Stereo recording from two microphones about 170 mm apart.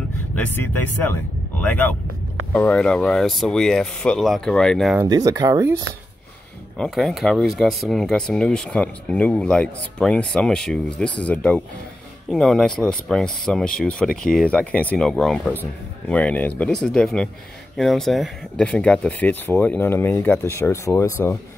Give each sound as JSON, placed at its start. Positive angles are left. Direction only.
{"t": 0.4, "sound": "speech", "side_deg": 10}
{"t": 5.0, "sound": "speech", "side_deg": -20}
{"t": 6.8, "sound": "speech", "side_deg": 0}